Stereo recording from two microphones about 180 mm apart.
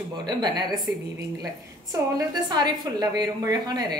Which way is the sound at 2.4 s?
20° right (ahead or behind).